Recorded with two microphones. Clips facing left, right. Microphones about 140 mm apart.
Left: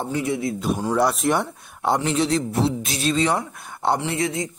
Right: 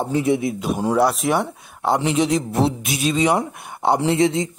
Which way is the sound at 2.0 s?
15° right (ahead or behind).